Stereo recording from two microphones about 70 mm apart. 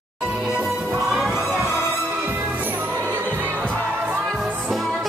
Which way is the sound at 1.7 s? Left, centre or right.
Centre.